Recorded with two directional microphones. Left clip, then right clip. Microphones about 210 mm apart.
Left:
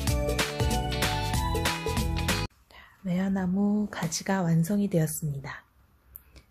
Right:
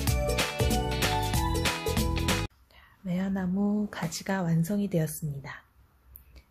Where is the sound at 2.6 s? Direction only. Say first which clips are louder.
Left 3 dB; 10° left (ahead or behind).